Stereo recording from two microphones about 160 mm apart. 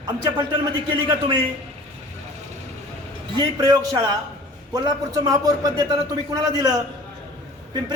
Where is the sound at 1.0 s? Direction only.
30° right (ahead or behind).